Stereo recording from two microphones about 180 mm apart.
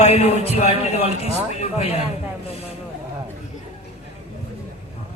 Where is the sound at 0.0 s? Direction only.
35° left (ahead or behind).